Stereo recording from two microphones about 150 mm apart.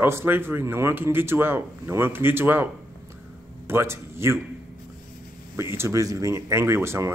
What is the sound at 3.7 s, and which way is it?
Speech, 15° right (ahead or behind).